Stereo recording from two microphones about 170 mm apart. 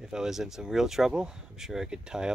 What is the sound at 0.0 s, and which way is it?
Speech, 5° right (ahead or behind).